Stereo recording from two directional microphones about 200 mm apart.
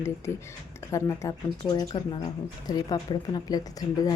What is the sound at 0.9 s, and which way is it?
Speech, 15° left (ahead or behind).